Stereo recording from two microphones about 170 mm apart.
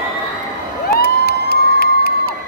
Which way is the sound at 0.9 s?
65° left (ahead or behind).